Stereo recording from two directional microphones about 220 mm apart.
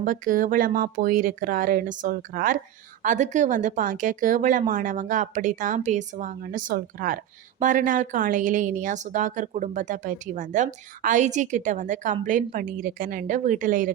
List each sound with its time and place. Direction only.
0.0 s a woman's voice: 35° right (ahead or behind)